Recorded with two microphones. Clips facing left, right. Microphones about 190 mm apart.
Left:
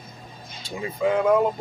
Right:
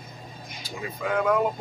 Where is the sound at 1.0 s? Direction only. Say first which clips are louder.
Left 7 dB; 25° left (ahead or behind).